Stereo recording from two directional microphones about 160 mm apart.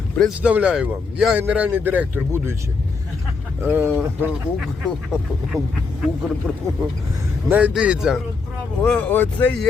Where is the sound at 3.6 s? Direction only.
15° right (ahead or behind).